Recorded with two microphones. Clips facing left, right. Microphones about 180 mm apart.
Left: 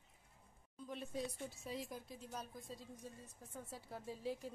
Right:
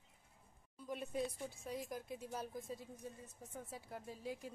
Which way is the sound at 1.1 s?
55° right (ahead or behind).